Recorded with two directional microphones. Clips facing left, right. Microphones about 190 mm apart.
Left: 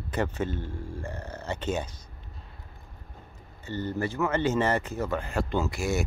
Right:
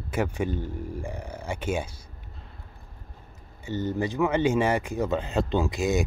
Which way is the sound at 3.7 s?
15° right (ahead or behind).